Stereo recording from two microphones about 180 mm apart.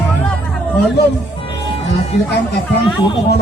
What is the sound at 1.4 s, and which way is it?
Music, 30° left (ahead or behind).